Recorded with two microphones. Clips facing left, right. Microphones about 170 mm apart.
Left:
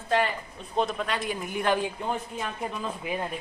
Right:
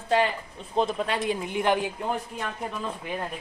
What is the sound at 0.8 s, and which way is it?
Speech, 30° right (ahead or behind).